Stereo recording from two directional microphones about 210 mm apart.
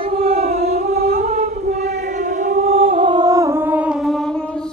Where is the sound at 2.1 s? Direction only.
35° right (ahead or behind); by 4.7 s 5° left (ahead or behind).